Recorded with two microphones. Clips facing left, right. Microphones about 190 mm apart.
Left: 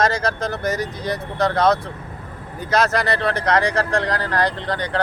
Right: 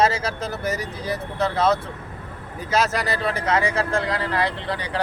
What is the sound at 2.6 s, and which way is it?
Speech, 5° right (ahead or behind).